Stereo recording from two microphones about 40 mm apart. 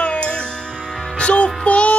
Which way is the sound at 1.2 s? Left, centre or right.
Left.